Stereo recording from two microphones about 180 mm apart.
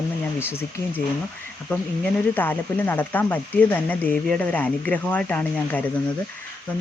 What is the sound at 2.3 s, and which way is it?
Speech, 10° left (ahead or behind).